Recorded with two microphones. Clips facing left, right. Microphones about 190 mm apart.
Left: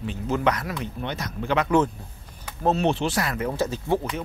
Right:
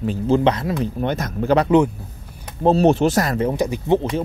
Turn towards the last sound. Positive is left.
turn(degrees=-15)  # may be behind; listen again after turning